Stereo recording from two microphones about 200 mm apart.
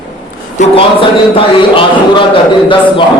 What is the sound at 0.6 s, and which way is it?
Speech, 25° left (ahead or behind).